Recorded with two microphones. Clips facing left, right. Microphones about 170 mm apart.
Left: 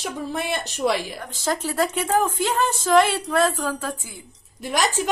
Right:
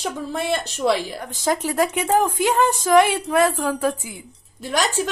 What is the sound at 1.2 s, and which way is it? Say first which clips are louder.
Speech: right 3 dB; 15° right (ahead or behind).